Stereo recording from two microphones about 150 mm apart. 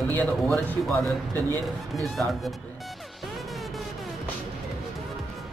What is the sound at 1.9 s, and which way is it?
Speech, centre (ahead or behind).